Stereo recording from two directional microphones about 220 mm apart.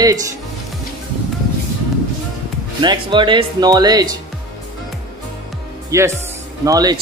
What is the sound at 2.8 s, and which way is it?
Speech, 20° right (ahead or behind).